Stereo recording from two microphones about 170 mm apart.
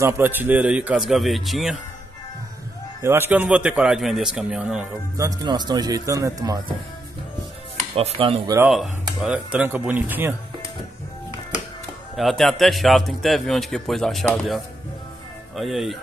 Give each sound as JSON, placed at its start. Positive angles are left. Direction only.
{"t": 0.0, "sound": "speech", "side_deg": -10}
{"t": 3.0, "sound": "speech", "side_deg": -15}
{"t": 5.1, "sound": "speech", "side_deg": -20}
{"t": 7.9, "sound": "speech", "side_deg": -35}
{"t": 8.6, "sound": "speech", "side_deg": 0}
{"t": 12.2, "sound": "speech", "side_deg": 0}